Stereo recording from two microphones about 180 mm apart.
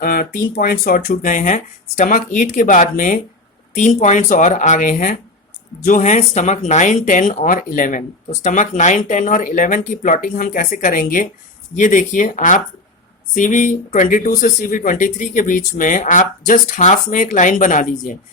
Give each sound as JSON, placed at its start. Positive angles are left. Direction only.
{"t": 0.0, "sound": "speech", "side_deg": 55}